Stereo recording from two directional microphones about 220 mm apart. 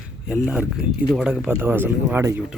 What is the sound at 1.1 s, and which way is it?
Speech, 5° right (ahead or behind).